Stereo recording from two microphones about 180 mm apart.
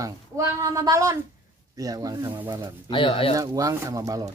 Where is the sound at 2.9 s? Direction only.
30° left (ahead or behind).